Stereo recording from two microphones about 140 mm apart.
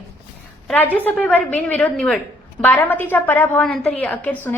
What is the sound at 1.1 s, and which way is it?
A woman's voice, 5° left (ahead or behind).